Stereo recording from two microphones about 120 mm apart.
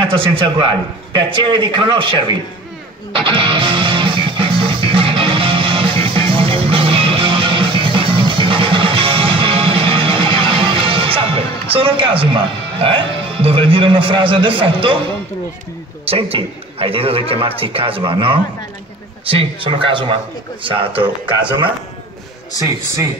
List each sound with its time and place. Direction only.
0.0 s a man's voice: 50° right (ahead or behind)
3.1 s music: 45° right (ahead or behind)
16.1 s a man's voice: 50° right (ahead or behind)